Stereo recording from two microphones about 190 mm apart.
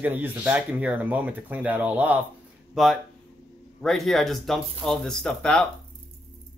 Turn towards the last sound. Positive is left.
turn(degrees=5)  # may be behind; listen again after turning